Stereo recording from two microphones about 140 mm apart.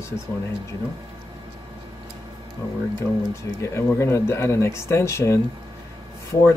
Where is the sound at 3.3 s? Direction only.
20° left (ahead or behind).